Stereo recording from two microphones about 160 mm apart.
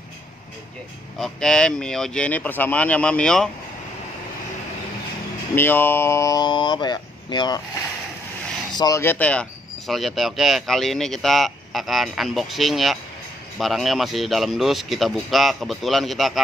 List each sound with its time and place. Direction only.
1.2 s speech: 5° left (ahead or behind)
5.6 s speech: 15° left (ahead or behind)
8.7 s speech: 20° left (ahead or behind); by 16.3 s centre (ahead or behind)